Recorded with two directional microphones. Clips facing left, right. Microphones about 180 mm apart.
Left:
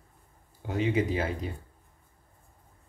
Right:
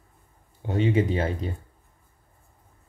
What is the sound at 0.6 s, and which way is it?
Speech, 30° right (ahead or behind).